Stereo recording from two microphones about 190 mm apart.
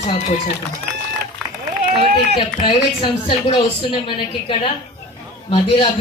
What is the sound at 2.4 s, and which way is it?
Speech, 25° left (ahead or behind).